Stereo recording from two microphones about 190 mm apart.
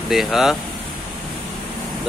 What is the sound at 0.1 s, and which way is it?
Speech, centre (ahead or behind).